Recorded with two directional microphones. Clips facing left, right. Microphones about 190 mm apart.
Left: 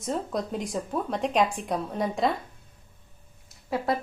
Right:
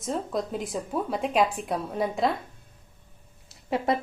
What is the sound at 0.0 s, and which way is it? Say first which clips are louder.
A woman's voice: even; centre (ahead or behind).